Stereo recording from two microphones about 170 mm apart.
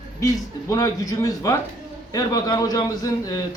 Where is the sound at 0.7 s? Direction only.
20° left (ahead or behind).